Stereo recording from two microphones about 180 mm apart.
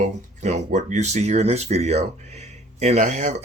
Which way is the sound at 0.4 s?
40° right (ahead or behind).